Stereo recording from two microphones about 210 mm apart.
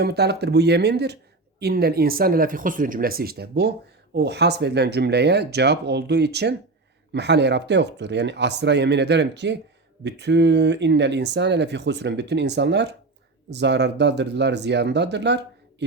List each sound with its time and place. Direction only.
0.0 s speech: 50° right (ahead or behind)